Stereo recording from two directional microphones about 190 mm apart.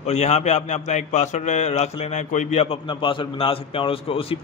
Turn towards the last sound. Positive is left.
turn(degrees=30)  # may be behind; listen again after turning